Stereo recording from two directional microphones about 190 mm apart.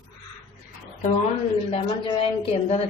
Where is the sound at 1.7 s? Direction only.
30° left (ahead or behind).